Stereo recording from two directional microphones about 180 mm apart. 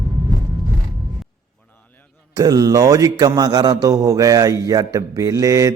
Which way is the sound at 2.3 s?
20° right (ahead or behind).